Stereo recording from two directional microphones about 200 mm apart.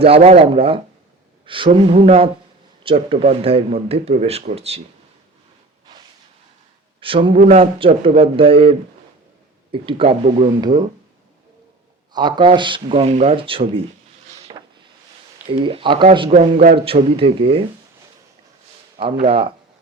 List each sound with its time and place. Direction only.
0.0 s speech: 30° right (ahead or behind)
7.0 s speech: 25° right (ahead or behind)
9.7 s speech: 25° right (ahead or behind)
12.1 s speech: 25° right (ahead or behind)
14.3 s a sound: 30° right (ahead or behind)
15.5 s speech: 25° right (ahead or behind)
18.9 s speech: 30° right (ahead or behind)